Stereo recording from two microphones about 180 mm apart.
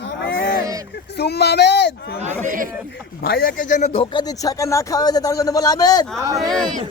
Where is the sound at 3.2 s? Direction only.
55° left (ahead or behind); by 6.0 s 20° left (ahead or behind).